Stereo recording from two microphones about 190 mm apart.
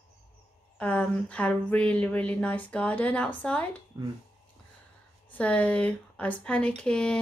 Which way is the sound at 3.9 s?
20° right (ahead or behind).